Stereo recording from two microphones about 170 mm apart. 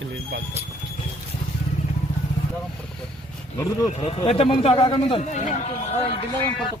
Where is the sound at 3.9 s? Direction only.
40° left (ahead or behind).